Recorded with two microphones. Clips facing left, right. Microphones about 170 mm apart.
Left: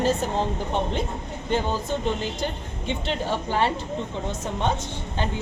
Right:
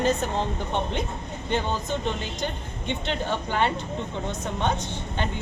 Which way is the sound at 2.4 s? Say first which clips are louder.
Left 1 dB; 5° left (ahead or behind).